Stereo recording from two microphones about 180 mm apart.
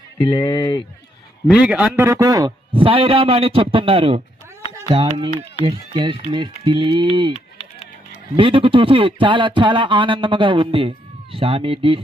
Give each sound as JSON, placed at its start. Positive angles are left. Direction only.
{"t": 0.3, "sound": "speech", "side_deg": 25}
{"t": 1.5, "sound": "speech", "side_deg": -5}
{"t": 7.3, "sound": "a sound", "side_deg": 35}
{"t": 8.4, "sound": "speech", "side_deg": -30}